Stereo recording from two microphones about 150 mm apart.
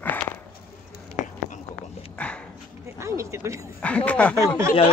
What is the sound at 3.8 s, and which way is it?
Speech, 10° left (ahead or behind).